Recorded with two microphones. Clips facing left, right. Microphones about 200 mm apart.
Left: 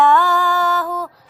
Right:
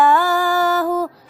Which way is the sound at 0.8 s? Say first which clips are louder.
Right 6 dB; 30° right (ahead or behind).